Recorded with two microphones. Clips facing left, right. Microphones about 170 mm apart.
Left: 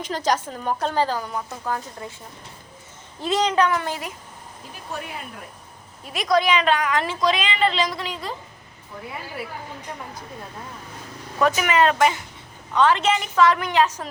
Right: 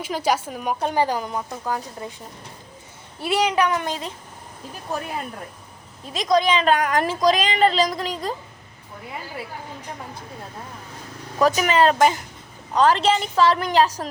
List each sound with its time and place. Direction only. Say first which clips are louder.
0.0 s a woman's voice: right 1 dB; 10° right (ahead or behind)
3.2 s a woman's voice: even; 10° right (ahead or behind)
6.1 s a woman's voice: right 1 dB; 20° right (ahead or behind)
6.7 s speech: right 2 dB; 45° right (ahead or behind)
11.4 s speech: right 2 dB; 35° right (ahead or behind)